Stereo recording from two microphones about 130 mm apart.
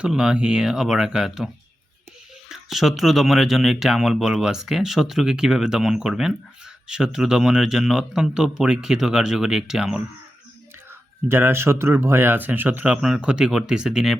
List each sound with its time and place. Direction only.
0.0 s speech: 5° right (ahead or behind)
2.5 s speech: centre (ahead or behind)
11.3 s speech: 20° right (ahead or behind)